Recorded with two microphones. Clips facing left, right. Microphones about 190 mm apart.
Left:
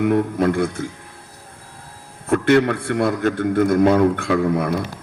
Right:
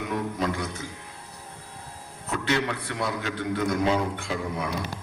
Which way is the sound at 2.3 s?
55° left (ahead or behind).